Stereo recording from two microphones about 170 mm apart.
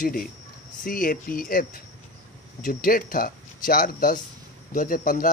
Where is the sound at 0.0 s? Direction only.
55° left (ahead or behind).